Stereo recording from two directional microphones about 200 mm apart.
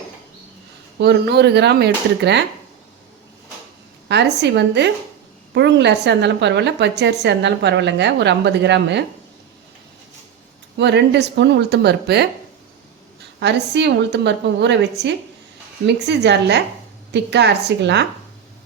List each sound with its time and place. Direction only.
0.9 s a woman's voice: 55° right (ahead or behind)
4.1 s a woman's voice: 60° right (ahead or behind)
10.8 s a woman's voice: 60° right (ahead or behind)
13.4 s a woman's voice: 60° right (ahead or behind)